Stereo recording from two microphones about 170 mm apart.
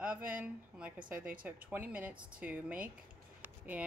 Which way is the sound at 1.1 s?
55° right (ahead or behind).